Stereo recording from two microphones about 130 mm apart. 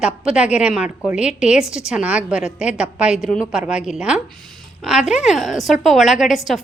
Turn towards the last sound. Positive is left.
turn(degrees=0)  # may be behind; listen again after turning